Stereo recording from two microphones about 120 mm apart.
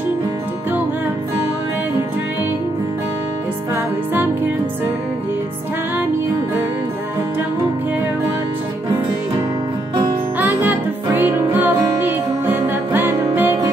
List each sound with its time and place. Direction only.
3.7 s music: 15° right (ahead or behind)
10.4 s music: 15° right (ahead or behind)